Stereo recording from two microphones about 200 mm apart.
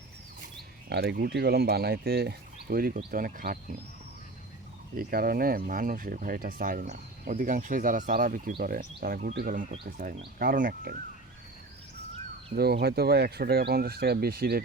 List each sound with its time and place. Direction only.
0.9 s speech: 55° right (ahead or behind)
4.9 s speech: 45° right (ahead or behind)
12.5 s speech: 50° right (ahead or behind)